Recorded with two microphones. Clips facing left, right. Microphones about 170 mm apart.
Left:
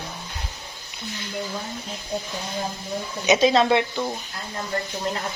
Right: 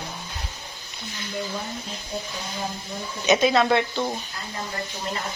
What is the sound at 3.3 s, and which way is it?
Speech, 25° left (ahead or behind).